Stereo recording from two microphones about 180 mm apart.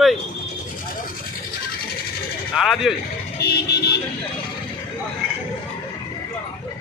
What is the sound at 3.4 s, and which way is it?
Vehicle, 65° left (ahead or behind).